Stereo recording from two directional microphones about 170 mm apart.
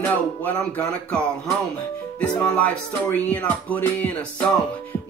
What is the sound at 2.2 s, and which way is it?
Speech, 10° left (ahead or behind).